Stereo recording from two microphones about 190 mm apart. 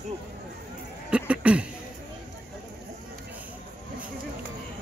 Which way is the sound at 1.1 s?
5° right (ahead or behind).